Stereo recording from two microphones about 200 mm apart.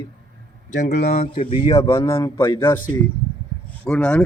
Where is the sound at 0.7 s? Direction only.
35° left (ahead or behind); by 2.5 s 10° left (ahead or behind).